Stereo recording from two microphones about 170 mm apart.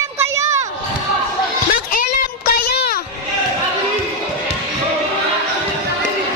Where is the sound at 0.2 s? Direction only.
15° right (ahead or behind).